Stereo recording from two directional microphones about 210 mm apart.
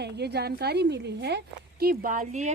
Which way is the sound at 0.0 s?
50° right (ahead or behind).